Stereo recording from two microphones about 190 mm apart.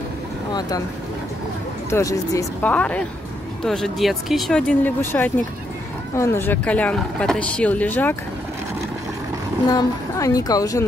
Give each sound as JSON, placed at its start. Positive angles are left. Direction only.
{"t": 0.5, "sound": "vehicle", "side_deg": 20}
{"t": 1.9, "sound": "a woman's voice", "side_deg": 15}
{"t": 9.7, "sound": "a woman's voice", "side_deg": 20}